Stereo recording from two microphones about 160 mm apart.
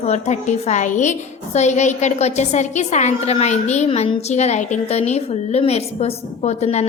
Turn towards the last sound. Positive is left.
turn(degrees=45)  # may be behind; listen again after turning